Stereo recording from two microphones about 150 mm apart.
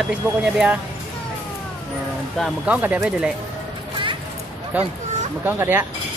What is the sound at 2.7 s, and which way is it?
Speech, 10° right (ahead or behind).